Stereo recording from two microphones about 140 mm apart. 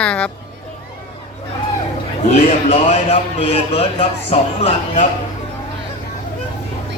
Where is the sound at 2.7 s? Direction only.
45° left (ahead or behind).